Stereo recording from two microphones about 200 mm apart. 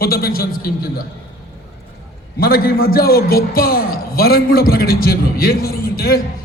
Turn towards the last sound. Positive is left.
turn(degrees=50)  # may be behind; listen again after turning